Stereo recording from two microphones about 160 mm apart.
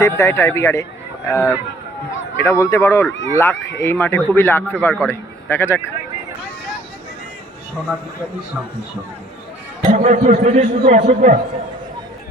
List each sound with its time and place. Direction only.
0.0 s a man's voice: 15° left (ahead or behind)
9.8 s a man's voice: 45° right (ahead or behind)